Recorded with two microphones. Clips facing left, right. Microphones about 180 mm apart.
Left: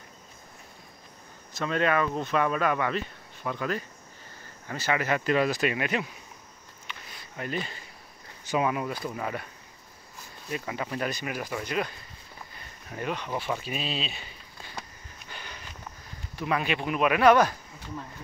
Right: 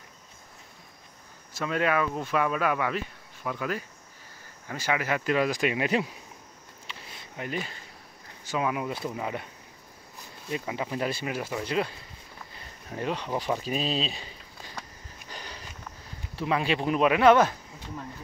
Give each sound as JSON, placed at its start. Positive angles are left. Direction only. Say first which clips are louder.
{"t": 1.5, "sound": "speech", "louder": "left 1 dB", "side_deg": -10}
{"t": 6.9, "sound": "a sound", "louder": "even", "side_deg": -30}
{"t": 7.3, "sound": "speech", "louder": "left 1 dB", "side_deg": -10}
{"t": 8.5, "sound": "speech", "louder": "left 3 dB", "side_deg": 15}
{"t": 8.8, "sound": "speech", "louder": "even", "side_deg": -20}
{"t": 10.5, "sound": "speech", "louder": "right 1 dB", "side_deg": -20}
{"t": 12.9, "sound": "speech", "louder": "right 2 dB", "side_deg": -30}
{"t": 15.2, "sound": "sniff", "louder": "right 2 dB", "side_deg": -35}
{"t": 16.3, "sound": "speech", "louder": "right 2 dB", "side_deg": -25}